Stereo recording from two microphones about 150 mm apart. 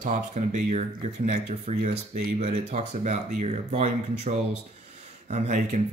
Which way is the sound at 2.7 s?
50° right (ahead or behind).